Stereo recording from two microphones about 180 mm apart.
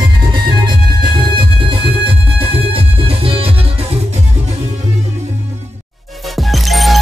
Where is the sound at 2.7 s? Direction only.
30° right (ahead or behind).